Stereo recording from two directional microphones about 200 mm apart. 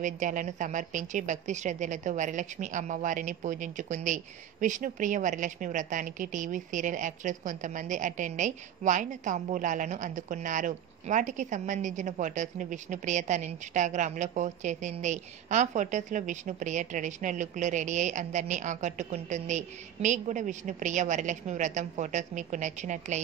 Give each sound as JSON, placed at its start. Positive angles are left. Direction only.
{"t": 0.0, "sound": "speech", "side_deg": -40}